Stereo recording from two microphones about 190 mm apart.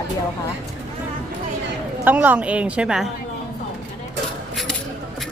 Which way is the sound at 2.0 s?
10° right (ahead or behind).